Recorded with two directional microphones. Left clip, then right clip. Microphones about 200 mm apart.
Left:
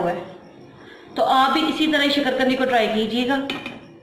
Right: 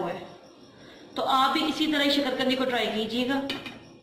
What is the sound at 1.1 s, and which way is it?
A woman's voice, centre (ahead or behind).